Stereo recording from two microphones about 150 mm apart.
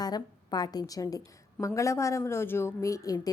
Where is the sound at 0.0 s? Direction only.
25° left (ahead or behind).